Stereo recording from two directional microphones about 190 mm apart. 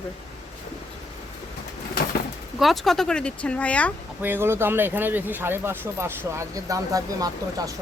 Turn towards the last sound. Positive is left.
turn(degrees=-20)  # may be behind; listen again after turning